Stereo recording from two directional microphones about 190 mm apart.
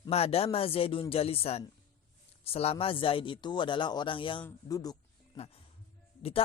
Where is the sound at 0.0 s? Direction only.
30° left (ahead or behind).